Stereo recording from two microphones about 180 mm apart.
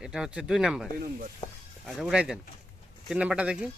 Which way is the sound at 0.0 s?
5° right (ahead or behind).